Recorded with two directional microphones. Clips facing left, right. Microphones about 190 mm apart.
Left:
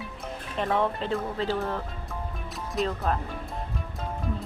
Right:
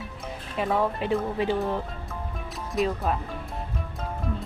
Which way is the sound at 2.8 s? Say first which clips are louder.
Right 3 dB; centre (ahead or behind).